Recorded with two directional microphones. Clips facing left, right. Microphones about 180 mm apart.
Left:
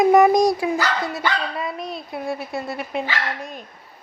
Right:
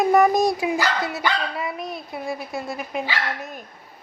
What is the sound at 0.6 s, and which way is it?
A woman's voice, 10° right (ahead or behind).